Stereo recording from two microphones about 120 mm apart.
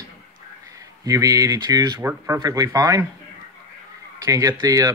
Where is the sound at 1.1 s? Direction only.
30° right (ahead or behind).